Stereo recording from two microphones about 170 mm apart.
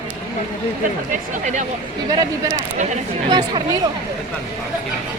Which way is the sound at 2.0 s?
20° right (ahead or behind).